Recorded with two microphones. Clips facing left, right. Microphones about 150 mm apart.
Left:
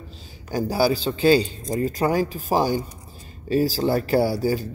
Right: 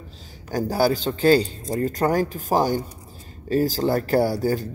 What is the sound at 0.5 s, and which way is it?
Speech, 5° left (ahead or behind).